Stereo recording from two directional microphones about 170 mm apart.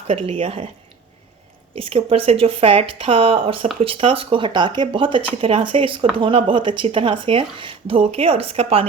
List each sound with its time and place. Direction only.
0.1 s a woman's voice: 35° right (ahead or behind)
1.8 s a woman's voice: 35° right (ahead or behind)